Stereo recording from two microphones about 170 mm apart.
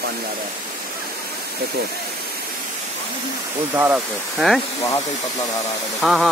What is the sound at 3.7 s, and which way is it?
Speech, 10° right (ahead or behind).